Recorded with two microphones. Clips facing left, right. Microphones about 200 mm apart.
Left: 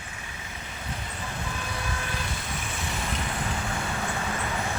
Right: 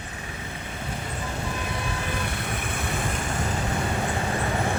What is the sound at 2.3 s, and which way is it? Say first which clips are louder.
Vehicle: right 4 dB; 60° right (ahead or behind).